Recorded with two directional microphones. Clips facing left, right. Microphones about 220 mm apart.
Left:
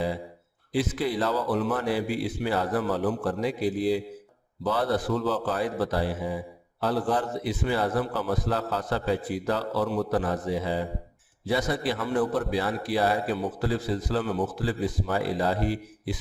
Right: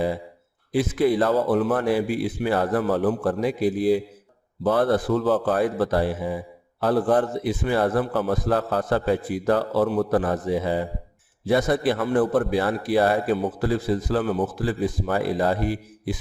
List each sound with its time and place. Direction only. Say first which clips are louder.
0.7 s a man's voice: right 6 dB; 50° right (ahead or behind)